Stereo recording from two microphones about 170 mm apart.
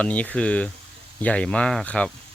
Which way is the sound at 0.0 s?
10° left (ahead or behind).